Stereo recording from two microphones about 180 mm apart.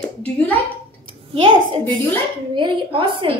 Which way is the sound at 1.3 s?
30° right (ahead or behind).